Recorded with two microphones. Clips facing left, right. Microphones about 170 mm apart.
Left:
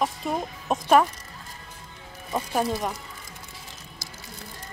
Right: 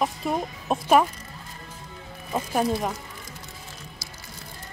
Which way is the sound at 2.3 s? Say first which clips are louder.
Right 1 dB; centre (ahead or behind).